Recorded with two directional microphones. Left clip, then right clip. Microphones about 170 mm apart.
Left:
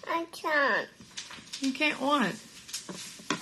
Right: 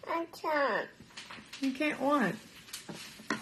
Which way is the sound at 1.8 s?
20° right (ahead or behind).